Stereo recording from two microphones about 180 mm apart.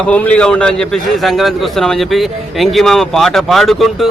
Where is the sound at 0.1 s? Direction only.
5° left (ahead or behind).